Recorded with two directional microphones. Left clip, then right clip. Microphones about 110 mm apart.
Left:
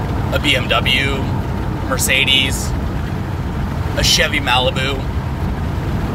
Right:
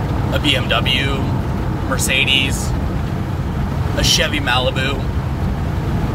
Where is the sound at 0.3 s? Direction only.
5° right (ahead or behind).